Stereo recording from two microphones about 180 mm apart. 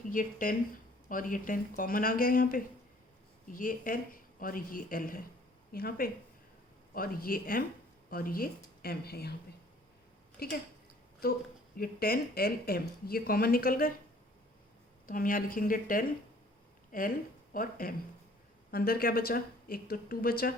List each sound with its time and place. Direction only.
0.1 s speech: 50° left (ahead or behind)
10.4 s speech: 60° left (ahead or behind)
15.0 s speech: 50° left (ahead or behind)